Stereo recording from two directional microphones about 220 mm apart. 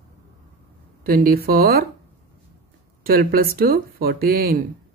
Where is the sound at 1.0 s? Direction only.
40° right (ahead or behind).